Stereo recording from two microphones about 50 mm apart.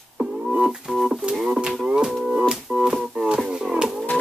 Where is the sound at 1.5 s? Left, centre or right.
Centre.